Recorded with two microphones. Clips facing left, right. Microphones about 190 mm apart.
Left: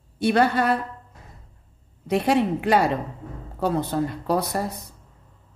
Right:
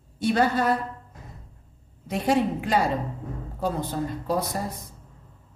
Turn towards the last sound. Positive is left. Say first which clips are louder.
# left 3 dB
turn(degrees=65)  # may be behind; listen again after turning